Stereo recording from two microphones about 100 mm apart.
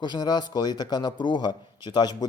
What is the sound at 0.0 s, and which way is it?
A man's voice, 45° left (ahead or behind).